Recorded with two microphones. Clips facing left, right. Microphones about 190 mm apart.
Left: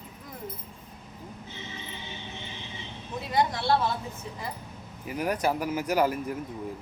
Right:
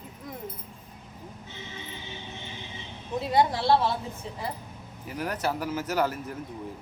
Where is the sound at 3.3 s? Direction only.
30° right (ahead or behind).